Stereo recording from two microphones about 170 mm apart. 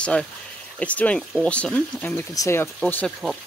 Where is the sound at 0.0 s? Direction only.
5° left (ahead or behind).